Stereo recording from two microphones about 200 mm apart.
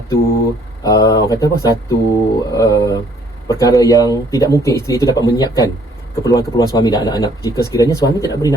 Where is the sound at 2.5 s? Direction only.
15° left (ahead or behind).